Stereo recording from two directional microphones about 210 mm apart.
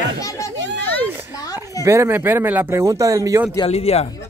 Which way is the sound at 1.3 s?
20° left (ahead or behind).